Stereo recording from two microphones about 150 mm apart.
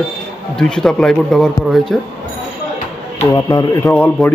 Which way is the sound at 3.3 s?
25° left (ahead or behind).